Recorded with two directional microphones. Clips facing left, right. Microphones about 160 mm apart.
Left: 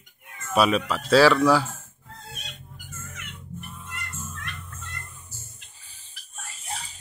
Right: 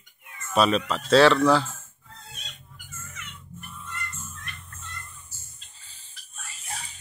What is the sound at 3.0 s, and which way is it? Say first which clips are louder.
Music: left 1 dB; 60° left (ahead or behind).